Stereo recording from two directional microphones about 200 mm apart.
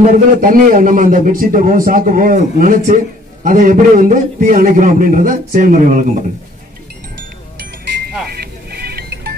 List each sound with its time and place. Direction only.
0.0 s a man's voice: 45° right (ahead or behind)
8.3 s music: 50° right (ahead or behind)